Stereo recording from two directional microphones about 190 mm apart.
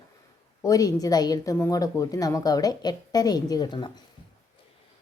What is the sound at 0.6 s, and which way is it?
Speech, 20° left (ahead or behind).